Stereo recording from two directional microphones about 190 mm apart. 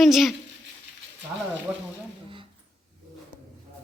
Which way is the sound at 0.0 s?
Centre (ahead or behind).